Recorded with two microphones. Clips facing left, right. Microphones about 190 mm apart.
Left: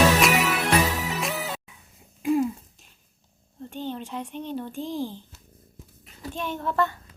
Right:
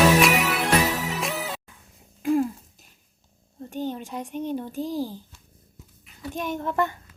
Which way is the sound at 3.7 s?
10° right (ahead or behind).